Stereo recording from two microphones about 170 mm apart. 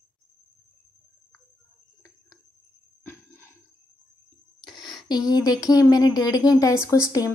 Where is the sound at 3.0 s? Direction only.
15° left (ahead or behind).